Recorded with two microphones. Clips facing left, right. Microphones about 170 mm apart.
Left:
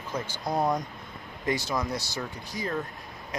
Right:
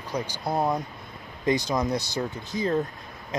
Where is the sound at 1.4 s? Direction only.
20° right (ahead or behind).